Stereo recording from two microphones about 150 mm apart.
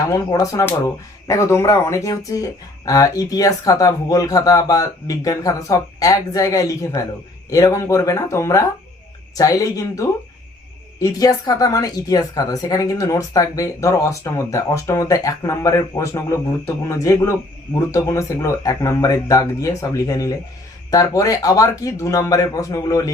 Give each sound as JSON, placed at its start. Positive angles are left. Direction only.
{"t": 0.1, "sound": "speech", "side_deg": 20}
{"t": 11.2, "sound": "speech", "side_deg": 25}